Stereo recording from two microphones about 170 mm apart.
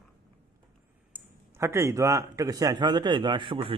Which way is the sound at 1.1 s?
15° right (ahead or behind).